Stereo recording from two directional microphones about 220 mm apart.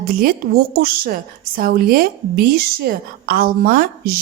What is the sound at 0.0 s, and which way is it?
A woman's voice, 40° right (ahead or behind).